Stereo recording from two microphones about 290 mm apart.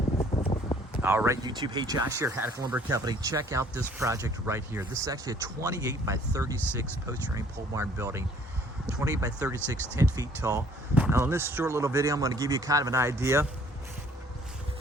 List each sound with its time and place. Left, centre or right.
0.3 s wind: centre
1.0 s speech: centre